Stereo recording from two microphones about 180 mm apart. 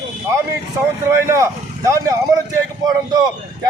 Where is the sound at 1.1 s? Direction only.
15° right (ahead or behind).